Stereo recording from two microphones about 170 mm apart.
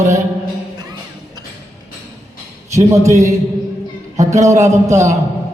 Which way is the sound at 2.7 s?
15° right (ahead or behind).